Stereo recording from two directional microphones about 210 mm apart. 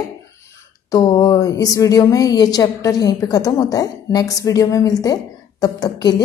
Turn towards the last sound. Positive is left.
turn(degrees=20)  # may be behind; listen again after turning